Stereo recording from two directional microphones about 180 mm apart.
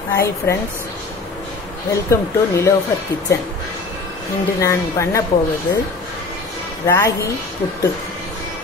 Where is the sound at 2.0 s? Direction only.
15° left (ahead or behind).